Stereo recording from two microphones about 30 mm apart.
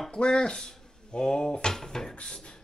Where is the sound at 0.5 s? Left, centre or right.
Centre.